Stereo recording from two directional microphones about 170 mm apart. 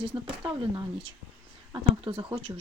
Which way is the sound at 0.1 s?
25° right (ahead or behind).